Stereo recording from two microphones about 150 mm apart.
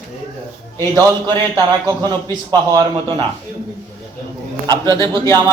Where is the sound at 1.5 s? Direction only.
25° right (ahead or behind).